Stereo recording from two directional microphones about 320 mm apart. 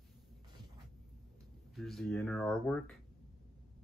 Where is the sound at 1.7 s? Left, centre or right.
Centre.